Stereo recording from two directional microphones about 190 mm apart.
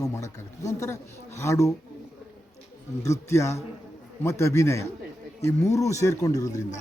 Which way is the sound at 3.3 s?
15° left (ahead or behind).